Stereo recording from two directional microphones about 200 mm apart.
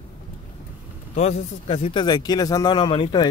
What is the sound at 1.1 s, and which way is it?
A man's voice, 30° left (ahead or behind).